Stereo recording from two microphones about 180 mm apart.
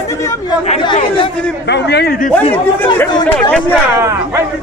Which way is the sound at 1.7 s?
65° left (ahead or behind).